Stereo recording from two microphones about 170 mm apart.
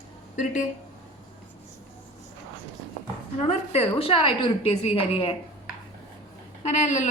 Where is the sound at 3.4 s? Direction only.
40° left (ahead or behind).